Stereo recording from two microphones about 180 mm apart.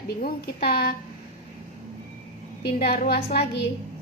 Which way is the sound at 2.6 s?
60° left (ahead or behind).